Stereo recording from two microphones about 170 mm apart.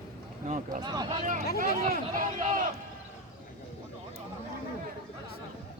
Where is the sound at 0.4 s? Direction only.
45° right (ahead or behind).